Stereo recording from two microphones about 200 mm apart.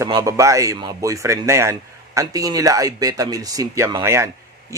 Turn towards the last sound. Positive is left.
turn(degrees=-15)  # may be behind; listen again after turning